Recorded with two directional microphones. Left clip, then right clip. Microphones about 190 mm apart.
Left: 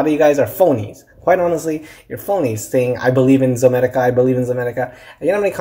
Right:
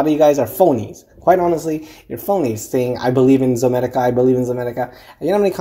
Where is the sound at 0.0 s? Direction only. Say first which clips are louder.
Even; 25° right (ahead or behind).